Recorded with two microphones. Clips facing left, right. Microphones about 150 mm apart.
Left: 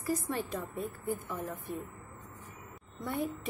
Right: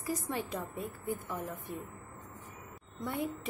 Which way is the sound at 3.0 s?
15° right (ahead or behind).